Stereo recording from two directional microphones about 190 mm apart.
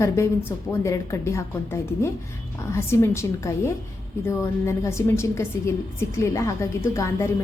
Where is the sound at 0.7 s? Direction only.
15° left (ahead or behind).